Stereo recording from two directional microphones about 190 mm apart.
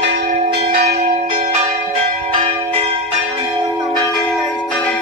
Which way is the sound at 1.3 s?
35° right (ahead or behind).